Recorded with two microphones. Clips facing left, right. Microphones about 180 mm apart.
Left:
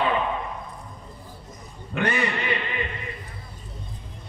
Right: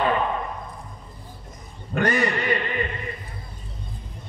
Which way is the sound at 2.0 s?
40° right (ahead or behind).